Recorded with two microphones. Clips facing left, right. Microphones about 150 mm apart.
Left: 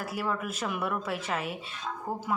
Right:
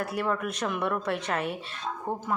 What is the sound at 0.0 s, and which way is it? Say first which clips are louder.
A woman's voice: right 3 dB; centre (ahead or behind).